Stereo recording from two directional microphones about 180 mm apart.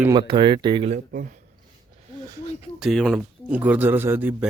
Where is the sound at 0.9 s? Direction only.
45° right (ahead or behind).